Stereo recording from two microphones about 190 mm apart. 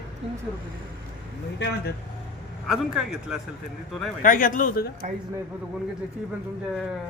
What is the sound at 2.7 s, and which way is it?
Speech, 5° right (ahead or behind).